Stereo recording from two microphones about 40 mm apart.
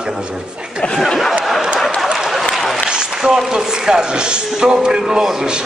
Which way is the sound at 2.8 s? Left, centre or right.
Centre.